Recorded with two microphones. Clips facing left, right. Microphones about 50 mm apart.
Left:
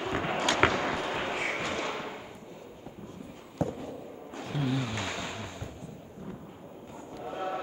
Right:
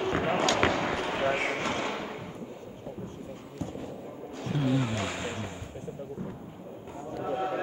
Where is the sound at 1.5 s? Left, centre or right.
Right.